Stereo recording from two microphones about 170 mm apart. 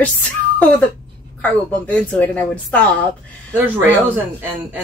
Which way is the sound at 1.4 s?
10° left (ahead or behind).